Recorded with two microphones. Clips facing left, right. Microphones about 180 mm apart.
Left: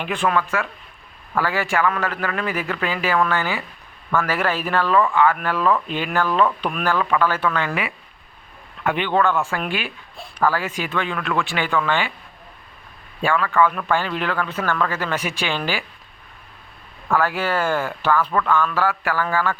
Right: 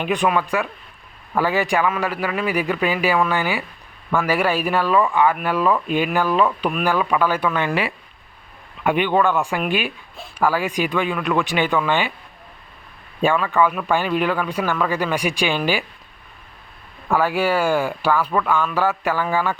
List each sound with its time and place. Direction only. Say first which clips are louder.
0.0 s speech: right 2 dB; 15° right (ahead or behind)
8.8 s speech: right 2 dB; 15° right (ahead or behind)
13.2 s speech: right 1 dB; 20° right (ahead or behind)
17.1 s speech: right 2 dB; 15° right (ahead or behind)